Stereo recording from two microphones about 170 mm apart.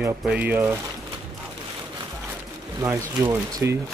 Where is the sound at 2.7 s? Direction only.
15° right (ahead or behind).